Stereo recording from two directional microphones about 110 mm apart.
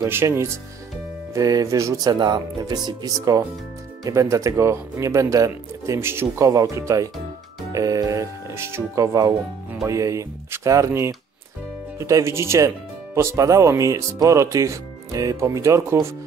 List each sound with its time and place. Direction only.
0.0 s speech: 20° right (ahead or behind)